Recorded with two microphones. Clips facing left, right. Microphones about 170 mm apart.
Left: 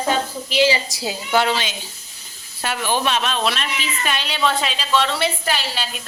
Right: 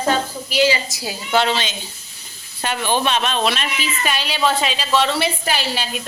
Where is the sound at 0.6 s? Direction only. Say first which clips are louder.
Even; 30° left (ahead or behind).